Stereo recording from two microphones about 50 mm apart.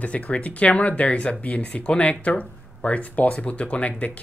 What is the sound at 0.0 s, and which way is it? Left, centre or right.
Speech, left.